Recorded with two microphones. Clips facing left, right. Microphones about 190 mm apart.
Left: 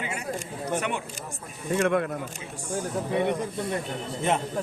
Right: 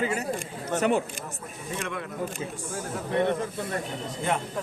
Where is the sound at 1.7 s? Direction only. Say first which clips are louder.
Left 11 dB; 55° left (ahead or behind).